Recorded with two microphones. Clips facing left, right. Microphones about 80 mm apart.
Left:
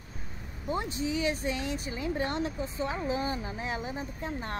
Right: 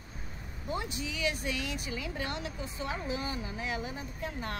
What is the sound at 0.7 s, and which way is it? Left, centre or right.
Speech, left.